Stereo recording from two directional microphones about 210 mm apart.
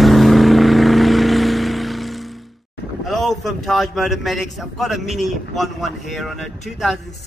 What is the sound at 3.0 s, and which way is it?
A man's voice, centre (ahead or behind).